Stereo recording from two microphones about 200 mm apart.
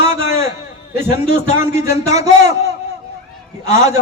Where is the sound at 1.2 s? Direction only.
35° left (ahead or behind).